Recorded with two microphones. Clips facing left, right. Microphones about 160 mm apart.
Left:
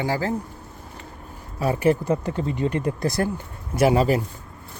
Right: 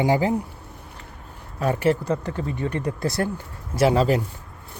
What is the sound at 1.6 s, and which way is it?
Speech, 10° left (ahead or behind).